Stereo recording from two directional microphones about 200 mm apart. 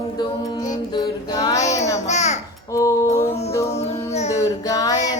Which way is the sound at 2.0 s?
35° left (ahead or behind).